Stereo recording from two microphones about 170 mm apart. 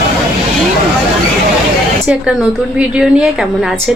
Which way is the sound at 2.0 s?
5° right (ahead or behind).